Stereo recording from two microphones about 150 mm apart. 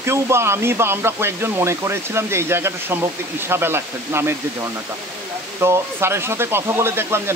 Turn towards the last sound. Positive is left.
turn(degrees=-15)  # may be behind; listen again after turning